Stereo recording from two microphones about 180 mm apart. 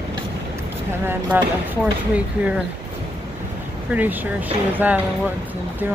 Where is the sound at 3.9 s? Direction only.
10° right (ahead or behind).